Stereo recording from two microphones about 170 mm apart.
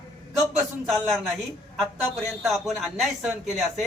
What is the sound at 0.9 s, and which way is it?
Speech, centre (ahead or behind).